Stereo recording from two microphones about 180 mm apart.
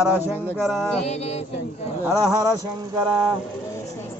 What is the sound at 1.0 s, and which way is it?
Music, 35° left (ahead or behind).